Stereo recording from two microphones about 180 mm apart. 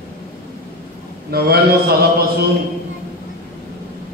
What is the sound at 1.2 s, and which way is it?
A man's voice, 60° right (ahead or behind).